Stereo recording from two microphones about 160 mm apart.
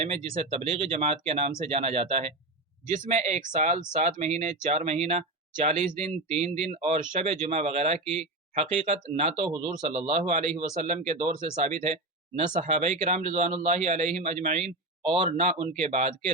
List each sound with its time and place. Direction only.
0.5 s a man's voice: 40° right (ahead or behind)
6.0 s speech: 5° left (ahead or behind)
6.7 s a man's voice: 45° right (ahead or behind)
8.0 s speech: 5° left (ahead or behind)
8.5 s speech: 40° right (ahead or behind)
9.6 s a man's voice: 30° right (ahead or behind); by 16.1 s 45° right (ahead or behind)